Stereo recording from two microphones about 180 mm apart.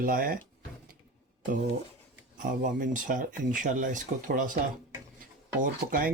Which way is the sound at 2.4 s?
50° right (ahead or behind).